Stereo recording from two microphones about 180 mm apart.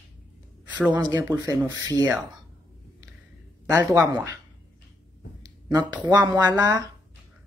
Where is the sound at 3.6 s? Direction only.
20° right (ahead or behind).